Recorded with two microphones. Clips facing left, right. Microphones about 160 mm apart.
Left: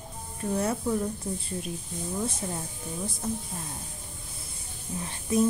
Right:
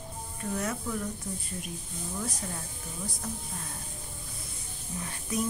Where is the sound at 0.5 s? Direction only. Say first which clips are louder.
Left 6 dB; 30° left (ahead or behind).